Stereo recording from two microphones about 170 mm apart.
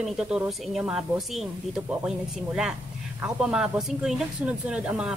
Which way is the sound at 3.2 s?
5° right (ahead or behind).